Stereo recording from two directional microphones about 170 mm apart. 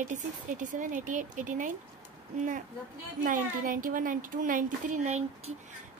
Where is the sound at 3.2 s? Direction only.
50° right (ahead or behind).